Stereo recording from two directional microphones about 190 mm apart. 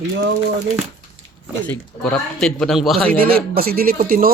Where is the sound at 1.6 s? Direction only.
10° left (ahead or behind).